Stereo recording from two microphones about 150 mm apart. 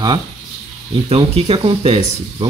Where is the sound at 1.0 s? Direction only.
40° right (ahead or behind).